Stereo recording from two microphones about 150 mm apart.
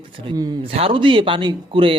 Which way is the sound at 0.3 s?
30° right (ahead or behind).